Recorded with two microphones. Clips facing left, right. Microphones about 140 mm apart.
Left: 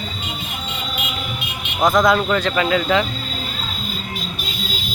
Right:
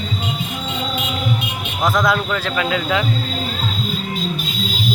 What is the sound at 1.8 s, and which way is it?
Speech, centre (ahead or behind).